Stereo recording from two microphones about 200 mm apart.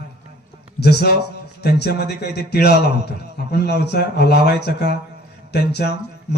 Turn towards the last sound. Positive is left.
turn(degrees=55)  # may be behind; listen again after turning